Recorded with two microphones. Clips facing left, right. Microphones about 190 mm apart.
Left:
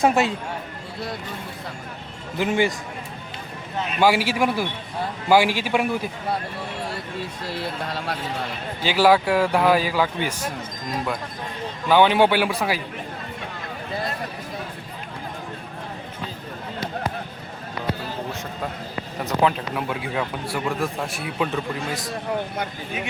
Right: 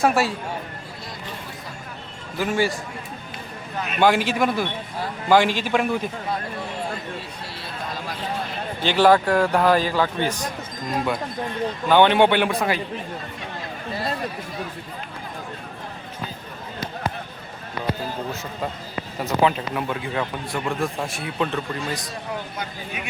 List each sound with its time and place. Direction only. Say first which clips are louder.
0.0 s speech: left 1 dB; 20° left (ahead or behind)
2.4 s speech: left 1 dB; 20° left (ahead or behind)
4.0 s a man's voice: right 1 dB; 10° left (ahead or behind)
7.9 s speech: left 2 dB; 65° left (ahead or behind)
8.8 s a man's voice: right 1 dB; 5° left (ahead or behind)
11.9 s a man's voice: right 1 dB; 5° left (ahead or behind)
19.2 s a man's voice: right 1 dB; centre (ahead or behind)